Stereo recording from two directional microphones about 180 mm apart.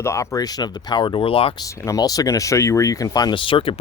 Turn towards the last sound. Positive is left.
turn(degrees=30)  # may be behind; listen again after turning